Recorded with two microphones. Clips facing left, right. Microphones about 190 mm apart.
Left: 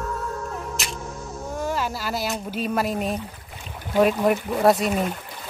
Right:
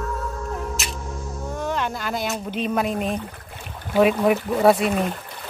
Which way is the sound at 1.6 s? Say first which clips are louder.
Right 1 dB; 5° left (ahead or behind).